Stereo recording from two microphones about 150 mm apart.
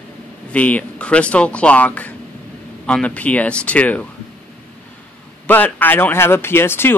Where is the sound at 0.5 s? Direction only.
10° left (ahead or behind).